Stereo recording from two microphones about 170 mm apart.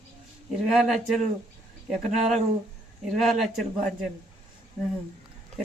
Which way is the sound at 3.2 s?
Centre (ahead or behind).